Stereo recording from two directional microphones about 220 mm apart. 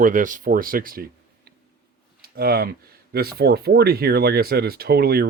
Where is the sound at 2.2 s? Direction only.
45° right (ahead or behind).